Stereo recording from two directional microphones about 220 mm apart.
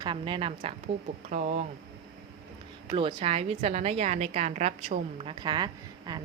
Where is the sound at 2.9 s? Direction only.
25° right (ahead or behind).